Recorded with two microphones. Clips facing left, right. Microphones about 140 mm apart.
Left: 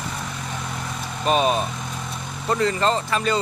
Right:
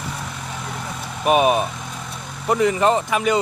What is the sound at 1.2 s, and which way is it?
Speech, 15° right (ahead or behind).